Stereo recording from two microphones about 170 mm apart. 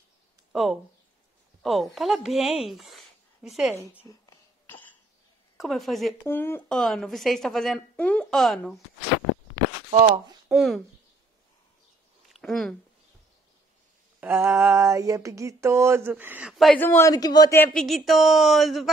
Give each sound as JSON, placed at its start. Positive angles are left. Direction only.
{"t": 0.5, "sound": "speech", "side_deg": 0}
{"t": 5.6, "sound": "a woman's voice", "side_deg": 0}
{"t": 6.2, "sound": "a man's voice", "side_deg": 15}
{"t": 6.8, "sound": "a woman's voice", "side_deg": 0}
{"t": 9.8, "sound": "speech", "side_deg": -35}
{"t": 10.5, "sound": "a woman's voice", "side_deg": 0}
{"t": 12.3, "sound": "a sound", "side_deg": 0}
{"t": 14.2, "sound": "a sound", "side_deg": -15}
{"t": 16.8, "sound": "a man's voice", "side_deg": 15}
{"t": 17.7, "sound": "a woman's voice", "side_deg": 0}